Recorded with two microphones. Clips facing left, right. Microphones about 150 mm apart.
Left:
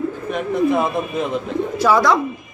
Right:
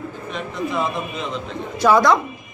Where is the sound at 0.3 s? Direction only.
55° left (ahead or behind).